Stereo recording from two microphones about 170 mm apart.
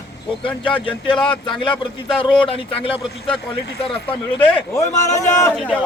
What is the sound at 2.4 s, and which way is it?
Speech, 35° left (ahead or behind).